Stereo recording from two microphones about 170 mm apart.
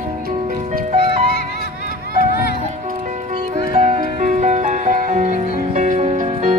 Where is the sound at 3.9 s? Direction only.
45° right (ahead or behind).